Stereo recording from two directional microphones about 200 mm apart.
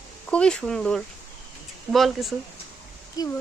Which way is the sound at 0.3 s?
5° left (ahead or behind).